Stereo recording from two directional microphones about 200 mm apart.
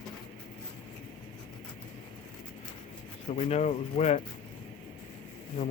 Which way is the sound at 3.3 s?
35° left (ahead or behind).